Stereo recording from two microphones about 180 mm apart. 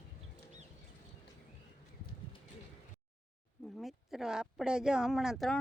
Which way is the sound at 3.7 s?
Centre (ahead or behind).